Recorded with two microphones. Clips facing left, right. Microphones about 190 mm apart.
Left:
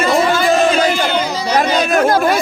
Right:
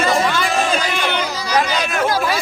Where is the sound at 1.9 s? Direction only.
45° left (ahead or behind).